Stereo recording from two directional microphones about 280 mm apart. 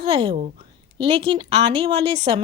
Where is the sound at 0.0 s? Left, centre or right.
Centre.